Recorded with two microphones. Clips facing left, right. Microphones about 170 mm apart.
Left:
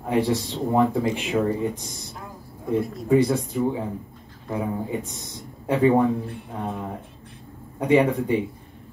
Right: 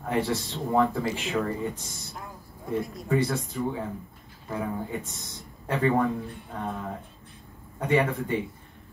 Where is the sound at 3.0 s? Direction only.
15° left (ahead or behind).